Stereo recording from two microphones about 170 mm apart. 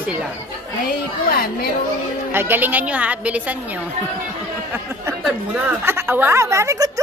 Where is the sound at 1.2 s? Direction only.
60° left (ahead or behind).